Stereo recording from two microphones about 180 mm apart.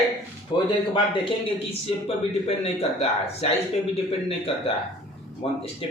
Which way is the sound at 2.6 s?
35° left (ahead or behind).